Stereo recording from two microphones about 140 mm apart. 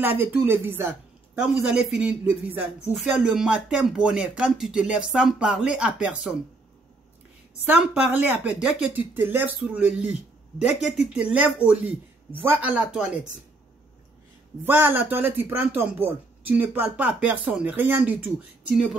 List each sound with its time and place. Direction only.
0.0 s a man's voice: 15° right (ahead or behind)
7.6 s a man's voice: 5° right (ahead or behind)
14.6 s a man's voice: 15° right (ahead or behind)